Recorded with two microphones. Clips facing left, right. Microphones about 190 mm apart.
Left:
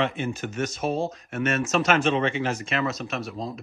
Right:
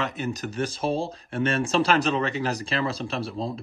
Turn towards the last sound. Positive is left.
turn(degrees=-30)  # may be behind; listen again after turning